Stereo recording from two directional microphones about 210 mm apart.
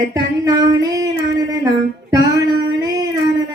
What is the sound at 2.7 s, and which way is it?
Child singing, 15° right (ahead or behind).